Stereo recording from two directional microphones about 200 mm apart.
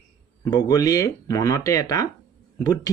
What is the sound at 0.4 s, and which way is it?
Speech, 15° left (ahead or behind).